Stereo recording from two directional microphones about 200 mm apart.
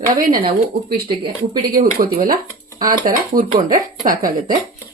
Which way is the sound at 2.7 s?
20° right (ahead or behind).